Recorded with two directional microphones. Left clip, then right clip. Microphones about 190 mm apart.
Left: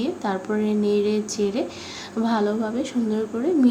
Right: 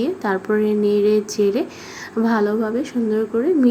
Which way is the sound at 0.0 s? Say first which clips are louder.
Right 5 dB; 15° right (ahead or behind).